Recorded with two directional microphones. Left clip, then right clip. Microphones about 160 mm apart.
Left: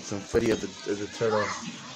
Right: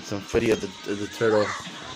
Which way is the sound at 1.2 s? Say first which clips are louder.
Right 5 dB; 35° right (ahead or behind).